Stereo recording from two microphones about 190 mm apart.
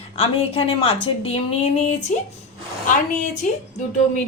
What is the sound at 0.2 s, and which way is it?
A woman's voice, 30° left (ahead or behind).